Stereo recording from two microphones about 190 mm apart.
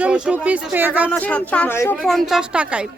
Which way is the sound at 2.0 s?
Centre (ahead or behind).